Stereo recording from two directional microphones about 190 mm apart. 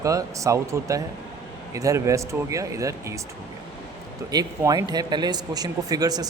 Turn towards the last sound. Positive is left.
turn(degrees=-20)  # may be behind; listen again after turning